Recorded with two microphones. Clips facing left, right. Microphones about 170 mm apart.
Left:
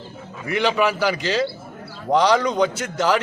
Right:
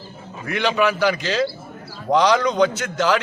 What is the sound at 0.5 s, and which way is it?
A man's voice, 5° left (ahead or behind).